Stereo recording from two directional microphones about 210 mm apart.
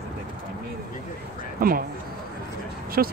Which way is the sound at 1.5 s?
45° right (ahead or behind).